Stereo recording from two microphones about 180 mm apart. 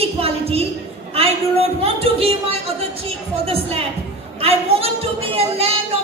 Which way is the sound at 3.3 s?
35° right (ahead or behind).